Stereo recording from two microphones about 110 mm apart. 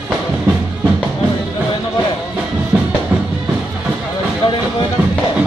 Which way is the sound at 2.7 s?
15° right (ahead or behind).